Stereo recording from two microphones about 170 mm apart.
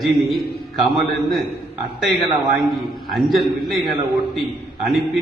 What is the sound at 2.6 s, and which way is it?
A man's voice, centre (ahead or behind).